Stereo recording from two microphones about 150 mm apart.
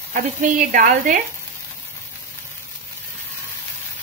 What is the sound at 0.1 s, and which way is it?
Speech, 60° right (ahead or behind).